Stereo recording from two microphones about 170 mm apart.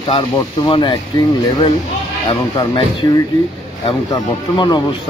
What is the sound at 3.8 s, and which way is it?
A man's voice, 25° left (ahead or behind).